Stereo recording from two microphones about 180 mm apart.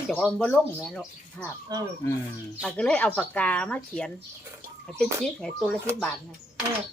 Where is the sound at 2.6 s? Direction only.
5° left (ahead or behind).